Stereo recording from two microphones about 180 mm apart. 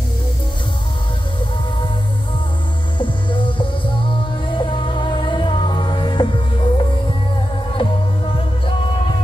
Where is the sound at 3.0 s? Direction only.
25° left (ahead or behind).